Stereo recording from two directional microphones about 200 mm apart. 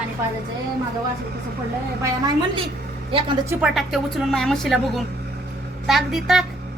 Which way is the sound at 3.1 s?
25° right (ahead or behind).